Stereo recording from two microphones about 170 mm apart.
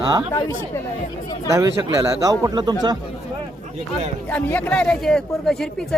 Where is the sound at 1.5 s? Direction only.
15° right (ahead or behind).